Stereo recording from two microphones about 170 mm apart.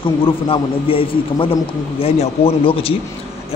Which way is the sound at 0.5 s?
30° left (ahead or behind).